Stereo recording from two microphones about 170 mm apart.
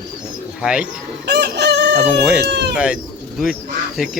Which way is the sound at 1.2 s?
80° right.